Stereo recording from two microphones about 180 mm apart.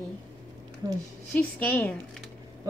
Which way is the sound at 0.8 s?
20° right (ahead or behind).